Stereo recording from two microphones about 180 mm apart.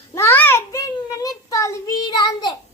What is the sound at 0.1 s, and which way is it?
Child singing, 15° left (ahead or behind).